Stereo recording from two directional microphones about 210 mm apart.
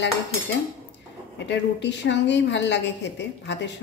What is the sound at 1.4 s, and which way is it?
A woman's voice, 55° left (ahead or behind).